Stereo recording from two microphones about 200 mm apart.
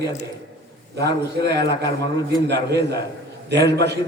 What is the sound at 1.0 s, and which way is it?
Speech, 55° right (ahead or behind).